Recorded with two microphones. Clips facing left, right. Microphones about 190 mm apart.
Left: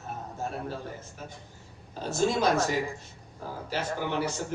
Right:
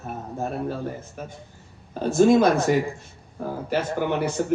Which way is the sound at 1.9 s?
55° right (ahead or behind).